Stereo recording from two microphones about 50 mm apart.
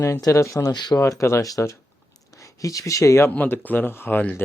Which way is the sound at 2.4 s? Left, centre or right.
Left.